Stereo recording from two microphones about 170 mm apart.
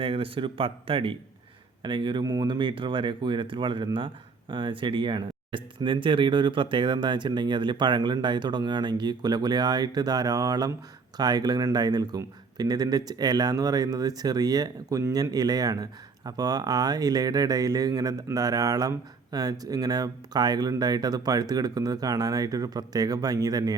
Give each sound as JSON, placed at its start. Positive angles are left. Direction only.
{"t": 0.0, "sound": "speech", "side_deg": -30}